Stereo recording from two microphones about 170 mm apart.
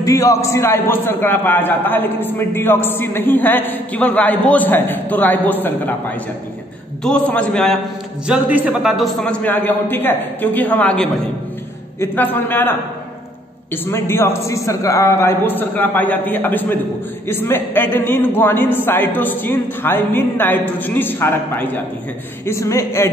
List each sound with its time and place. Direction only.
0.0 s a man's voice: 20° left (ahead or behind); by 7.8 s 5° left (ahead or behind)
8.3 s a man's voice: 10° right (ahead or behind); by 12.7 s 10° left (ahead or behind)
13.8 s a man's voice: 15° left (ahead or behind)